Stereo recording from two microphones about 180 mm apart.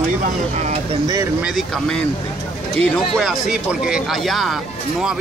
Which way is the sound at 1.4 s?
Centre (ahead or behind).